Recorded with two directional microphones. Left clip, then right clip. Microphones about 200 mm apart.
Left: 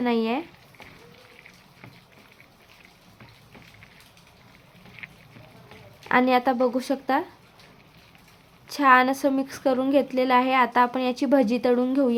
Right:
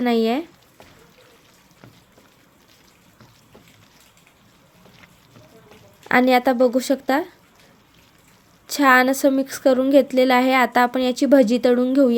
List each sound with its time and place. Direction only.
0.0 s a woman's voice: 20° right (ahead or behind)
6.1 s a woman's voice: 20° right (ahead or behind)
8.6 s a woman's voice: 25° right (ahead or behind)